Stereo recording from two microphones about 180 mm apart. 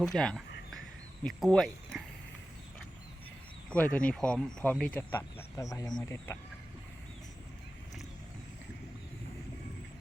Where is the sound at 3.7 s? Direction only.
5° left (ahead or behind).